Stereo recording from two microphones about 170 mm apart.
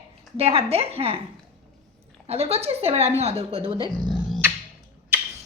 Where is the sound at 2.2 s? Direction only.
35° right (ahead or behind).